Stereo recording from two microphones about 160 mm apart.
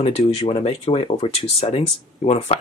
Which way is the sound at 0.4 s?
35° left (ahead or behind).